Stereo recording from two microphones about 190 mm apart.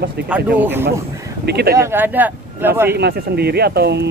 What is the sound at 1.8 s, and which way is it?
Speech, 10° right (ahead or behind).